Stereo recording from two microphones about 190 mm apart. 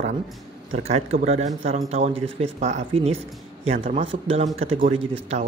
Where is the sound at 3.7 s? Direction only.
40° right (ahead or behind).